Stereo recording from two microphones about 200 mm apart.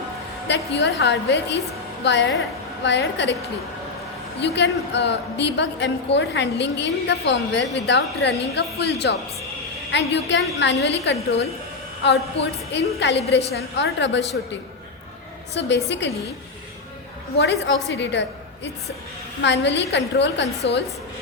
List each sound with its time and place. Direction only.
0.8 s a woman's voice: 60° left (ahead or behind)
4.4 s a woman's voice: 60° left (ahead or behind)
15.6 s a woman's voice: 60° left (ahead or behind)
17.3 s a woman's voice: 55° left (ahead or behind)